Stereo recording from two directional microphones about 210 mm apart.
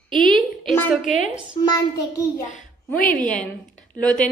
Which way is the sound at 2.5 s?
40° left (ahead or behind).